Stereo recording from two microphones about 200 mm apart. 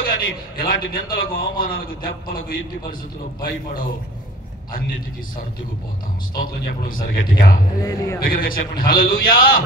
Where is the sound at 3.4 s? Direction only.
45° left (ahead or behind).